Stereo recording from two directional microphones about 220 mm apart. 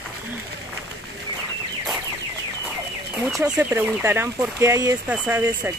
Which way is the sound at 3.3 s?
Centre (ahead or behind).